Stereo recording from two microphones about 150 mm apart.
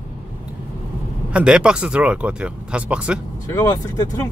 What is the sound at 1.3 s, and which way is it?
Speech, 5° right (ahead or behind).